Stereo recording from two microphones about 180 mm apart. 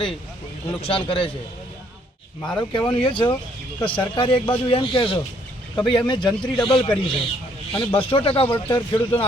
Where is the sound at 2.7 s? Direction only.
25° left (ahead or behind).